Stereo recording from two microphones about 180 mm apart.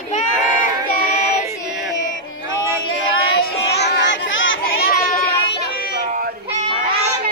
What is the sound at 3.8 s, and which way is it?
Children playing, 75° left (ahead or behind).